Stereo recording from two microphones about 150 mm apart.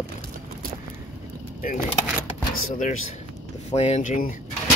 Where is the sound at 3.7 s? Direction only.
45° left (ahead or behind).